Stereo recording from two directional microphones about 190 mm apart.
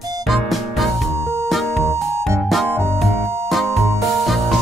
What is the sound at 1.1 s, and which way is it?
Music, 15° right (ahead or behind).